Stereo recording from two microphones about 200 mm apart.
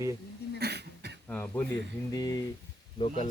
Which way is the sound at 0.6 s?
55° right (ahead or behind).